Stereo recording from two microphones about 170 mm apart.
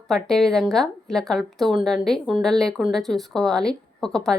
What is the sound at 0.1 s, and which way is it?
Speech, 5° left (ahead or behind).